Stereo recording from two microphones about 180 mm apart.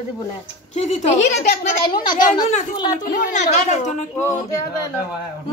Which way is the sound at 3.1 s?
45° left (ahead or behind).